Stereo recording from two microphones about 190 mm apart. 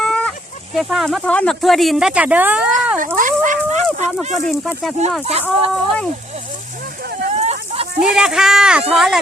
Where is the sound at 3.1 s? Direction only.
45° right (ahead or behind).